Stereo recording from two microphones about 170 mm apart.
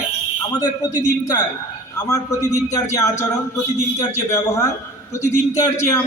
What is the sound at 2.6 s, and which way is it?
A man's voice, 15° left (ahead or behind).